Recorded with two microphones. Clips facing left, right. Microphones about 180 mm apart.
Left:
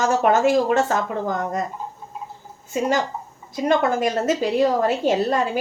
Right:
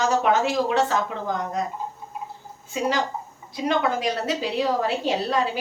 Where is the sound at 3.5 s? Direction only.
45° left (ahead or behind).